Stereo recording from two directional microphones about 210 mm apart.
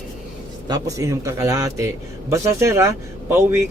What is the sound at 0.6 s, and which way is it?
A man's voice, 20° right (ahead or behind).